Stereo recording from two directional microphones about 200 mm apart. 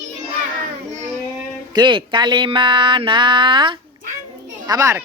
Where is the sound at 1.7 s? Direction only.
25° right (ahead or behind).